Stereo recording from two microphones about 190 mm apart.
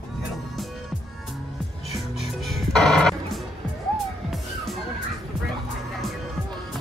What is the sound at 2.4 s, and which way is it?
Music, centre (ahead or behind).